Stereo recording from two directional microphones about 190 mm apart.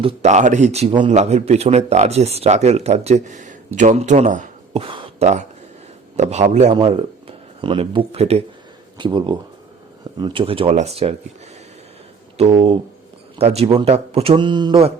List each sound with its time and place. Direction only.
0.0 s a man's voice: 30° right (ahead or behind)
6.7 s speech: 25° right (ahead or behind)
12.4 s a man's voice: 30° right (ahead or behind)